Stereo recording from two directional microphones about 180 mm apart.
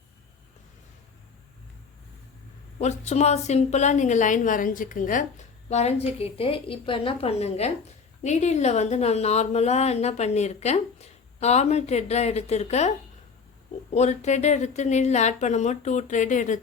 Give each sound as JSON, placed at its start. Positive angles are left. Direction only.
{"t": 2.7, "sound": "a woman's voice", "side_deg": 40}
{"t": 13.9, "sound": "a woman's voice", "side_deg": 40}